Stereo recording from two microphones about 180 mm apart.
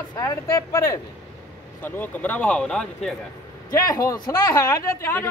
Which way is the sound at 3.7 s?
20° left (ahead or behind).